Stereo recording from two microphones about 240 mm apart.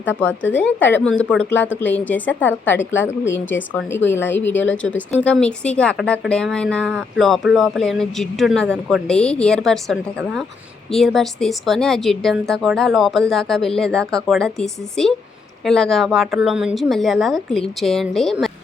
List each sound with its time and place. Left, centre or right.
0.0 s speech: centre
3.2 s a woman's voice: left
3.8 s speech: centre